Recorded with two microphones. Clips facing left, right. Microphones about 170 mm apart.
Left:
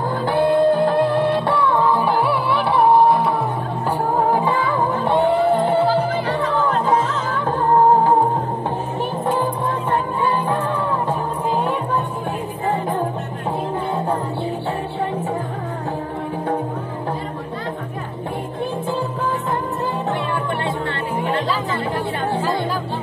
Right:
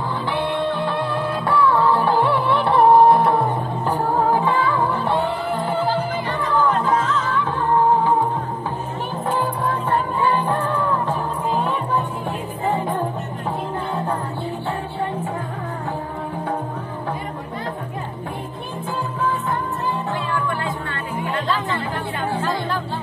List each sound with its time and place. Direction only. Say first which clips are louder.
0.2 s music: left 9 dB; 45° left (ahead or behind); by 3.4 s centre (ahead or behind)
4.4 s music: even; 15° left (ahead or behind)
5.7 s music: left 4 dB; 30° left (ahead or behind)
10.3 s music: even; 10° left (ahead or behind)